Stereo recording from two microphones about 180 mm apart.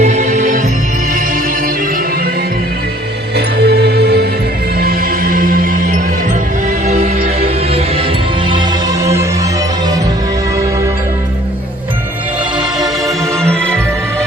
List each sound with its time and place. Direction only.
0.0 s music: 40° right (ahead or behind)
3.3 s music: 65° right (ahead or behind); by 8.0 s 35° right (ahead or behind)
8.4 s music: 20° right (ahead or behind)
12.5 s music: centre (ahead or behind)